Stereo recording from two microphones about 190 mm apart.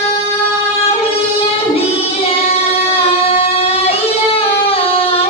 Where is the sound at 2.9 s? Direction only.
30° left (ahead or behind).